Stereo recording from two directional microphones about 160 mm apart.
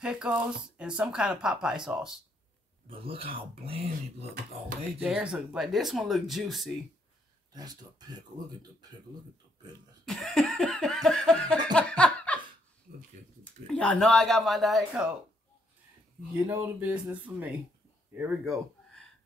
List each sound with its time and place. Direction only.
0.0 s laughter: 5° right (ahead or behind)
2.9 s speech: 35° right (ahead or behind)
5.0 s laughter: 5° right (ahead or behind)
7.5 s speech: 25° right (ahead or behind)
10.0 s laughter: centre (ahead or behind)
13.4 s laughter: 5° left (ahead or behind)
16.4 s speech: 10° right (ahead or behind)